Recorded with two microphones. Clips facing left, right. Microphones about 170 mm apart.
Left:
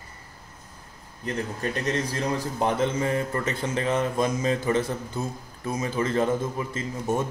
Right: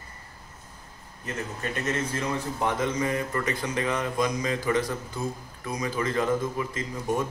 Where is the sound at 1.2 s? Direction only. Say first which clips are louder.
Left 4 dB; 35° left (ahead or behind).